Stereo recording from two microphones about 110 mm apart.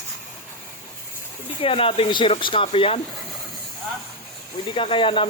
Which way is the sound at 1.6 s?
55° left (ahead or behind).